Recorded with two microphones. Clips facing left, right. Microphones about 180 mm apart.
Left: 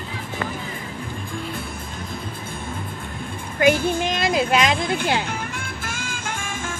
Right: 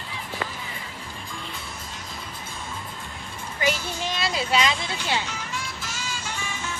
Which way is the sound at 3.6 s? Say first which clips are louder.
Left 9 dB; 55° left (ahead or behind).